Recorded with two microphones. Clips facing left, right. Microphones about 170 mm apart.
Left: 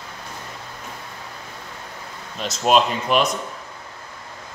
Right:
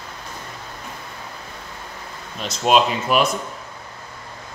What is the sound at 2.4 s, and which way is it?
Speech, centre (ahead or behind).